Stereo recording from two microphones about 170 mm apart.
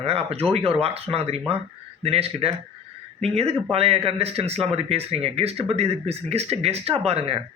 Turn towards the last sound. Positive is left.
turn(degrees=-35)  # may be behind; listen again after turning